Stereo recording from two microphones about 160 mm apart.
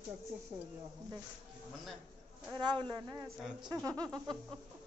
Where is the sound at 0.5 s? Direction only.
30° right (ahead or behind).